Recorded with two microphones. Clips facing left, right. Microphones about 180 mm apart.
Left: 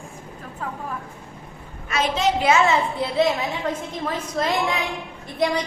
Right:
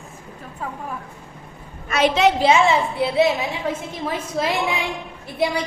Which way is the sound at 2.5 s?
10° right (ahead or behind).